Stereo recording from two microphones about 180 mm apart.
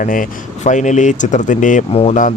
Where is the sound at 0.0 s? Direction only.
50° left (ahead or behind).